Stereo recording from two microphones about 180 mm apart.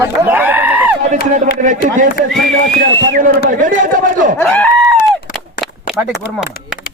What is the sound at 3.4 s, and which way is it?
Chatter, 45° right (ahead or behind).